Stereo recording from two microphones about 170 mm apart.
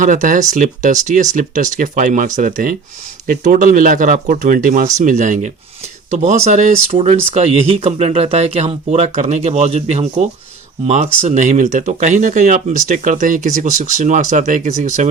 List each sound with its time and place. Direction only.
0.0 s speech: 50° right (ahead or behind)